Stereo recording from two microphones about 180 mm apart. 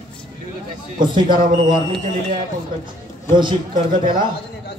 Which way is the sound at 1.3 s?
50° right (ahead or behind).